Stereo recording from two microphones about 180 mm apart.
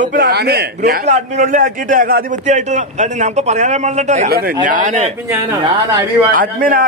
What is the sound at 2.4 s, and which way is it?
A man's voice, 40° right (ahead or behind).